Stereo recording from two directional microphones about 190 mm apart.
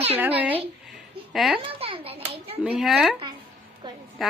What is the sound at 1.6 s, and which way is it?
Hands, 30° right (ahead or behind).